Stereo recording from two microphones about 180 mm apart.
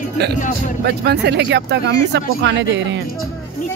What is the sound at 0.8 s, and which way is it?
Speech, 65° right (ahead or behind).